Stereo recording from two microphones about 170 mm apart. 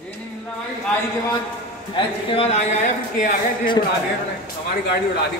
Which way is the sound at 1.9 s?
35° left (ahead or behind).